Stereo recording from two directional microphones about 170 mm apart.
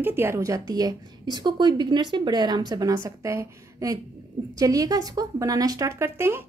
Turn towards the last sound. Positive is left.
turn(degrees=-15)  # may be behind; listen again after turning